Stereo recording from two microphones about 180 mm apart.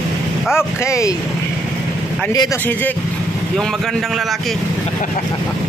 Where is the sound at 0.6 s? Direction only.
15° left (ahead or behind).